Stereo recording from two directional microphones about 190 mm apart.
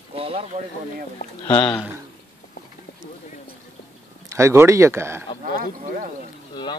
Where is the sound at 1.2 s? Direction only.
45° left (ahead or behind).